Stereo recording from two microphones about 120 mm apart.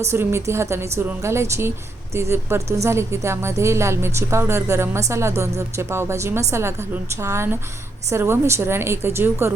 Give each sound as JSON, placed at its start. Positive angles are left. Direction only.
{"t": 0.1, "sound": "a woman's voice", "side_deg": -20}